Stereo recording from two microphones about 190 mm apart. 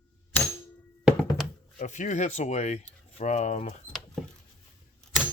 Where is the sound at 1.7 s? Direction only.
40° left (ahead or behind).